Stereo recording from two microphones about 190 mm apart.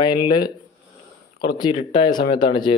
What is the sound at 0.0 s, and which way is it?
Speech, 20° left (ahead or behind).